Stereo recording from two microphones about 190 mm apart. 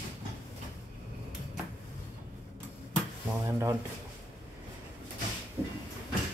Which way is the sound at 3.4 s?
15° right (ahead or behind).